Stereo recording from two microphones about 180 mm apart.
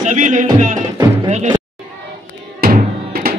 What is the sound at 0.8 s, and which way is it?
Music, 20° right (ahead or behind).